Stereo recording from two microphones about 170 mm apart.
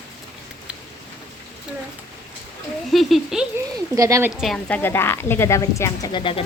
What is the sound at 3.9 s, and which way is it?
Speech, 15° right (ahead or behind).